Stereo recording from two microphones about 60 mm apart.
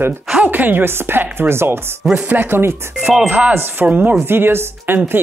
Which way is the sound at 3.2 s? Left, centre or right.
Right.